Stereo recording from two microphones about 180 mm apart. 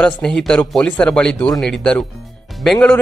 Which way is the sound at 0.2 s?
5° left (ahead or behind).